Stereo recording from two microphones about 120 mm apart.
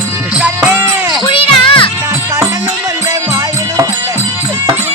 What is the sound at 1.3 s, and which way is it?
Music, 50° left (ahead or behind).